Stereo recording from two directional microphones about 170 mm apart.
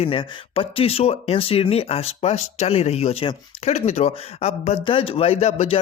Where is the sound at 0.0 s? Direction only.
35° left (ahead or behind).